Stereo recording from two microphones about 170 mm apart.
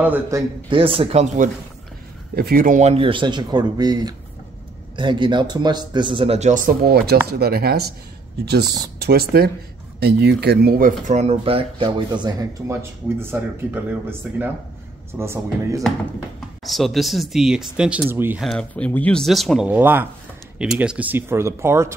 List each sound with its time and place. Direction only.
0.0 s speech: 10° right (ahead or behind)
0.7 s speech: 30° right (ahead or behind)
2.3 s speech: 60° right (ahead or behind)
9.0 s speech: 70° right (ahead or behind); by 12.4 s 25° right (ahead or behind)
13.2 s speech: 15° right (ahead or behind)
16.3 s speech: centre (ahead or behind)
18.4 s speech: 5° left (ahead or behind); by 21.9 s 15° right (ahead or behind)